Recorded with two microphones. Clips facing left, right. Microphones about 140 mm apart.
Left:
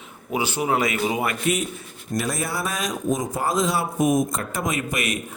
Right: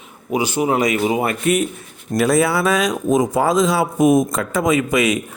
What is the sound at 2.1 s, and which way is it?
Speech, 70° right (ahead or behind).